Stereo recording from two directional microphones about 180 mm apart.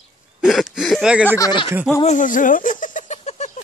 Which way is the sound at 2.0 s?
45° left (ahead or behind).